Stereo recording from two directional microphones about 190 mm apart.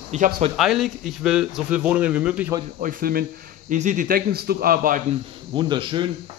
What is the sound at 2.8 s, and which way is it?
A man's voice, 50° right (ahead or behind).